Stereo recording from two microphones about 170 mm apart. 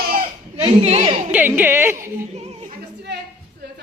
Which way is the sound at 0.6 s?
35° right (ahead or behind).